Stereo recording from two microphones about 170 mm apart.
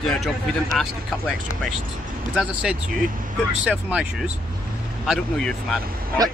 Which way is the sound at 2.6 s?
Centre (ahead or behind).